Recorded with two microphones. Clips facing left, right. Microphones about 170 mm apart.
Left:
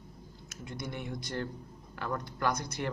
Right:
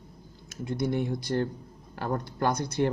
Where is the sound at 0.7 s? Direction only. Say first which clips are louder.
Right 11 dB; 35° right (ahead or behind).